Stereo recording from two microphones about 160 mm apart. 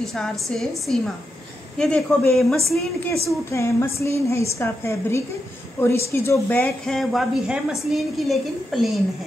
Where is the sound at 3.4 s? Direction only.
15° left (ahead or behind); by 9.0 s centre (ahead or behind).